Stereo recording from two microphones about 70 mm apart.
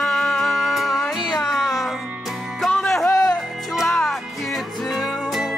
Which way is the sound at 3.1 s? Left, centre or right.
Left.